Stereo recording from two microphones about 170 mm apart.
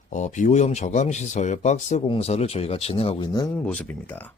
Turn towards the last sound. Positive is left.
turn(degrees=10)  # may be behind; listen again after turning